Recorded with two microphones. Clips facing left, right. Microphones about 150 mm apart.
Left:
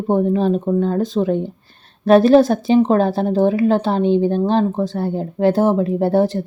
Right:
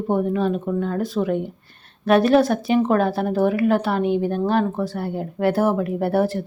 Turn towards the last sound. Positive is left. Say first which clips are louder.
# left 4 dB
turn(degrees=20)  # may be behind; listen again after turning